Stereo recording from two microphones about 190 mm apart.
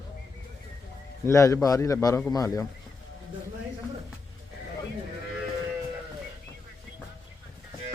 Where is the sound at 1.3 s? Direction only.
15° left (ahead or behind).